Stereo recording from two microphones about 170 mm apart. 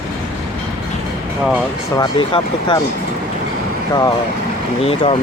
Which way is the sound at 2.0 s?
30° left (ahead or behind).